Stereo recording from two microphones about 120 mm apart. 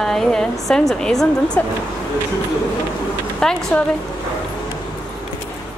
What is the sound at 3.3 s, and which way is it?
Speech, 5° left (ahead or behind).